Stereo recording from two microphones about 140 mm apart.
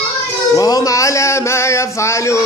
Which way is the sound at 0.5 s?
25° left (ahead or behind).